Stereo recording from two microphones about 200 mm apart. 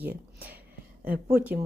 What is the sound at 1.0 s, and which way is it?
Speech, 50° right (ahead or behind).